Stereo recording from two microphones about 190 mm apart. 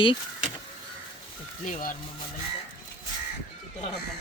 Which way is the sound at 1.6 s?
45° left (ahead or behind).